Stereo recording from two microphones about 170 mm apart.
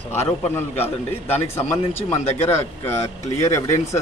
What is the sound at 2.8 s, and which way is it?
Speech, 15° left (ahead or behind).